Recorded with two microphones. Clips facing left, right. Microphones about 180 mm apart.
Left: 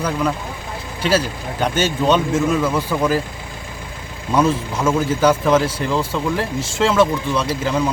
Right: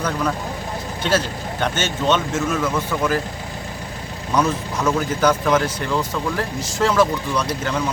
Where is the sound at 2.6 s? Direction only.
10° left (ahead or behind).